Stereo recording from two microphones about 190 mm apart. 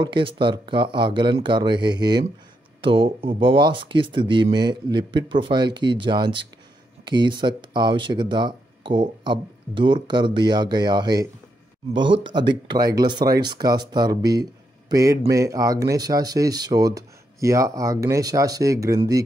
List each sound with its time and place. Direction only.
0.0 s speech: 25° right (ahead or behind)